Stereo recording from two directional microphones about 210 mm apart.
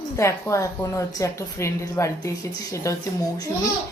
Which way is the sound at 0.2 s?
15° left (ahead or behind).